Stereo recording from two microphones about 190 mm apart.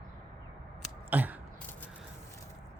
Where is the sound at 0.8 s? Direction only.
10° right (ahead or behind).